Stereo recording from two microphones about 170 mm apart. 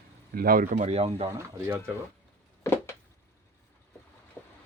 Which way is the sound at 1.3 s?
15° right (ahead or behind).